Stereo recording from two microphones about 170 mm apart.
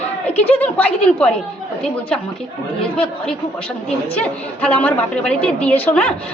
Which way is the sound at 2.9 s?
5° left (ahead or behind).